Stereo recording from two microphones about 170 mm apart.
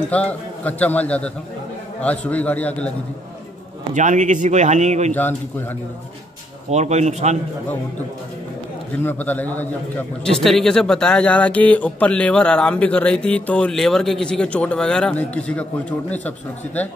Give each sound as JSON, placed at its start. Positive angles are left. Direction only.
{"t": 0.1, "sound": "a man's voice", "side_deg": 10}
{"t": 3.9, "sound": "speech", "side_deg": -45}
{"t": 5.1, "sound": "a man's voice", "side_deg": 10}
{"t": 6.7, "sound": "speech", "side_deg": -40}
{"t": 9.0, "sound": "a man's voice", "side_deg": 10}